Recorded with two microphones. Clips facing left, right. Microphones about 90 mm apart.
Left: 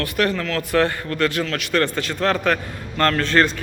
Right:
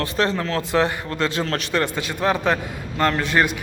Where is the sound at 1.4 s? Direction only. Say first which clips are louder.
Right 1 dB; 35° right (ahead or behind).